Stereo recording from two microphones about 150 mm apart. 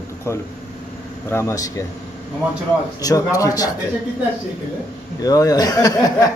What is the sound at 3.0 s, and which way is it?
Speech, 25° left (ahead or behind).